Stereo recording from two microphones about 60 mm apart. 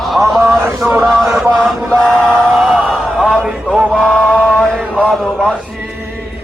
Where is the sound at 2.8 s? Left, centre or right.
Centre.